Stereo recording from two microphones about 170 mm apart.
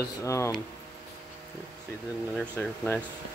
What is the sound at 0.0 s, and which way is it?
Speech, 15° left (ahead or behind).